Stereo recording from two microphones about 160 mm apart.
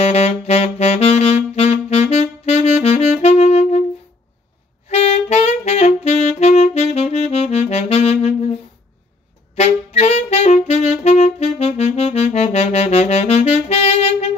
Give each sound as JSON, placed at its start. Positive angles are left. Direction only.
{"t": 0.0, "sound": "saxophone", "side_deg": 40}
{"t": 4.8, "sound": "saxophone", "side_deg": 40}
{"t": 9.6, "sound": "saxophone", "side_deg": 40}